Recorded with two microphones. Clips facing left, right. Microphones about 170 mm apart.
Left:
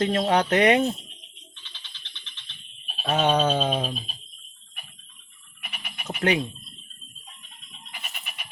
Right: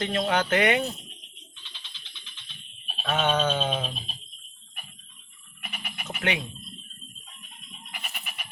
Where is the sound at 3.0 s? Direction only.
40° left (ahead or behind).